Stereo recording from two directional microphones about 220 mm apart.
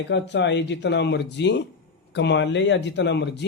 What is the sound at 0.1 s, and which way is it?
A man's voice, 50° left (ahead or behind).